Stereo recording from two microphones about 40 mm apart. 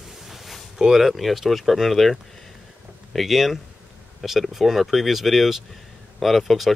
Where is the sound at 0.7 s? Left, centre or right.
Centre.